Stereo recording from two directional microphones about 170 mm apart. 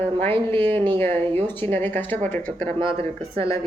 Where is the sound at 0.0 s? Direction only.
10° left (ahead or behind).